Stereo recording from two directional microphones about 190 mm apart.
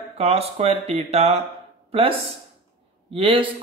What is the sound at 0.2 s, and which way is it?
Speech, 30° right (ahead or behind).